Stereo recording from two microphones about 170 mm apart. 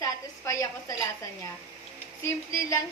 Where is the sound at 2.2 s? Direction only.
15° left (ahead or behind).